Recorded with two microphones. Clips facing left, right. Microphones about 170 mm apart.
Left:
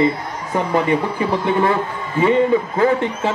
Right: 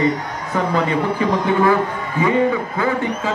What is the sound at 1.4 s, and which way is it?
Speech, 25° left (ahead or behind).